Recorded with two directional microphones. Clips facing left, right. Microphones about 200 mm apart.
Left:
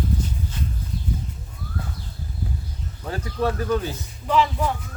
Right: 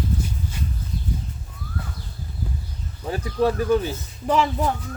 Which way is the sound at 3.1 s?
15° right (ahead or behind).